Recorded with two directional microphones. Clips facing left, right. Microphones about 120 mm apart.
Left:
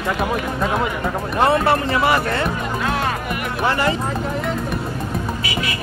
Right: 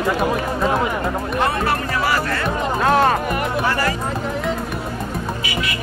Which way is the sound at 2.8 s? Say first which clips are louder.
Right 8 dB; 40° right (ahead or behind).